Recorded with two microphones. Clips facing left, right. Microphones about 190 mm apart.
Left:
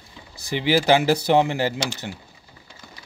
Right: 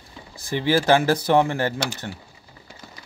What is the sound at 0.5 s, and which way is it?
Speech, 15° left (ahead or behind).